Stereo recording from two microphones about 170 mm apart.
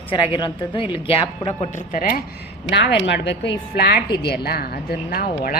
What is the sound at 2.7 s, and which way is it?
Speech, 90° left.